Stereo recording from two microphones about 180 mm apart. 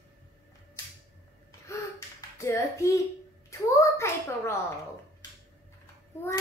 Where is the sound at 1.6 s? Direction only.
15° left (ahead or behind).